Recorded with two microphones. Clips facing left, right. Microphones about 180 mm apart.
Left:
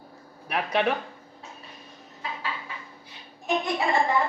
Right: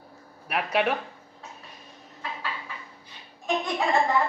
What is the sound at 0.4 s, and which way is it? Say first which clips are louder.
Speech: even; 5° right (ahead or behind).